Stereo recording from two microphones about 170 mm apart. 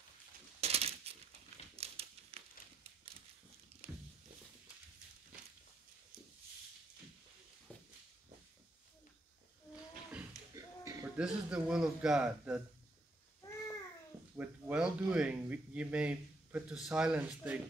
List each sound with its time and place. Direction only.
0.6 s coin: 40° right (ahead or behind)
1.8 s crumpling: 35° right (ahead or behind)
3.8 s a sound: 35° right (ahead or behind)
10.5 s a sound: 20° right (ahead or behind)
11.1 s speech: 5° right (ahead or behind)
14.3 s speech: 10° right (ahead or behind)